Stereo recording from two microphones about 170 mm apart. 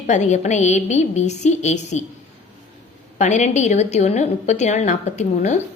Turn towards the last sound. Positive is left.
turn(degrees=40)  # may be behind; listen again after turning